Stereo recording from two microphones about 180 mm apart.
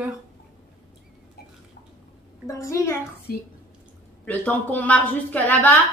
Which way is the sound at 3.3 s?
60° left (ahead or behind).